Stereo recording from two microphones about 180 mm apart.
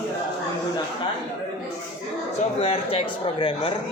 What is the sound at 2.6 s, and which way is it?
Speech, 35° left (ahead or behind).